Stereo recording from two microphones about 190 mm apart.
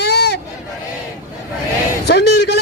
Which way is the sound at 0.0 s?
60° left (ahead or behind).